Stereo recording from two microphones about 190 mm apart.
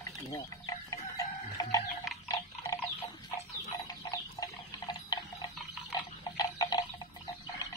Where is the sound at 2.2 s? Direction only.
20° left (ahead or behind).